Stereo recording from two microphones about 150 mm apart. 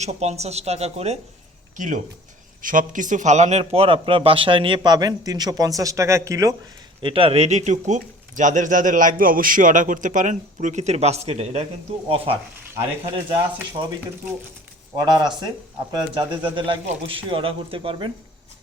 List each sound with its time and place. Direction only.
0.0 s speech: 45° right (ahead or behind)
1.7 s a man's voice: 60° right (ahead or behind); by 6.5 s 20° right (ahead or behind)
7.0 s speech: 40° right (ahead or behind)
14.9 s a man's voice: 30° right (ahead or behind)